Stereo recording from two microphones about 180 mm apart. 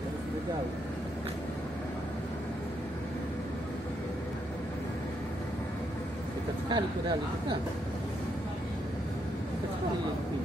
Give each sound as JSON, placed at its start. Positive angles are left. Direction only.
{"t": 6.7, "sound": "speech", "side_deg": -25}